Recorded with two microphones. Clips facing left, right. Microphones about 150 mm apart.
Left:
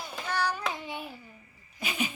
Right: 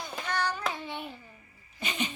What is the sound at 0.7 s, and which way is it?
Hands, 15° left (ahead or behind).